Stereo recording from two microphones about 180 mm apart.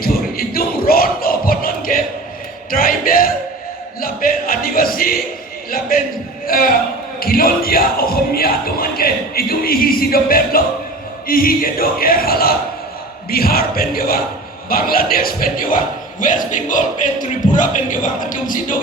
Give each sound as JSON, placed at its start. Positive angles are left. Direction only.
{"t": 0.0, "sound": "crowd", "side_deg": 55}
{"t": 2.6, "sound": "music", "side_deg": 55}
{"t": 5.9, "sound": "a man's voice", "side_deg": 55}
{"t": 11.3, "sound": "a sound", "side_deg": 55}
{"t": 16.2, "sound": "speech", "side_deg": 45}